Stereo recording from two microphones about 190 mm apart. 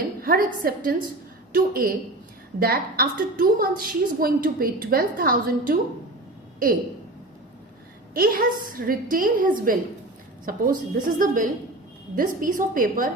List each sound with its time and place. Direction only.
0.2 s a woman's voice: 50° right (ahead or behind)
8.1 s a woman's voice: 50° right (ahead or behind)